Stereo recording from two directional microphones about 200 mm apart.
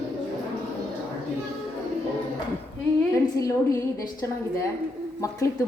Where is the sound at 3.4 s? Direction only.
15° left (ahead or behind).